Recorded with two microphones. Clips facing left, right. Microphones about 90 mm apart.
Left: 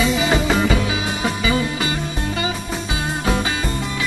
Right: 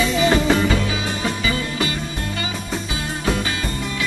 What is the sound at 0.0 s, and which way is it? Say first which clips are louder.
Music: right 1 dB; 10° left (ahead or behind).